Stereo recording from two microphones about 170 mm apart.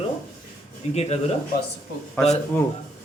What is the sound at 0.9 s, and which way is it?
Speech, 40° left (ahead or behind).